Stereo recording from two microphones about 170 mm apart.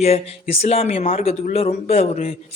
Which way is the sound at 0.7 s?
35° left (ahead or behind).